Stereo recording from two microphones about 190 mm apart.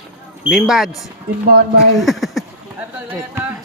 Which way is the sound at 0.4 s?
Centre (ahead or behind).